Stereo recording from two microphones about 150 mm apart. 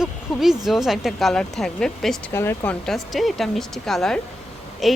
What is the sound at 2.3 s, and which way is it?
Speech, 15° left (ahead or behind).